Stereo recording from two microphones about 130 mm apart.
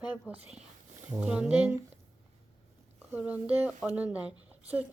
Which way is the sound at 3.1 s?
10° right (ahead or behind).